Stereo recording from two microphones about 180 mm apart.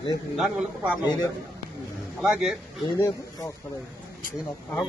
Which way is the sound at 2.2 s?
5° right (ahead or behind).